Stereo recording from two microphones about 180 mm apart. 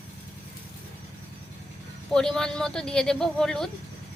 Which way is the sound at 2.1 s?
5° left (ahead or behind).